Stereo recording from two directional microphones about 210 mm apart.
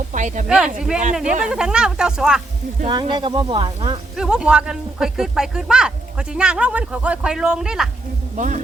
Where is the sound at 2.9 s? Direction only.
25° right (ahead or behind).